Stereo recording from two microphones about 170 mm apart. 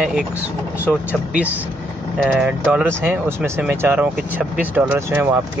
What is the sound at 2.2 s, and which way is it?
Speech, centre (ahead or behind).